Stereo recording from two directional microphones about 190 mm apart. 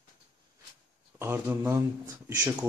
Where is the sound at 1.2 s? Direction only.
10° right (ahead or behind).